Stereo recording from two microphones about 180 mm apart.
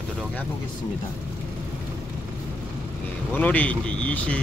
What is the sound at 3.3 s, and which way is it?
Speech, 10° left (ahead or behind).